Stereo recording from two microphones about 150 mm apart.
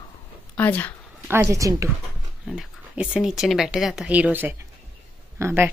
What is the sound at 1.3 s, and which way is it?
Speech, 20° right (ahead or behind).